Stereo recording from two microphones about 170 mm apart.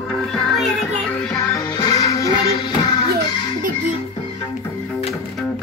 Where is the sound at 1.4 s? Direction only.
20° left (ahead or behind).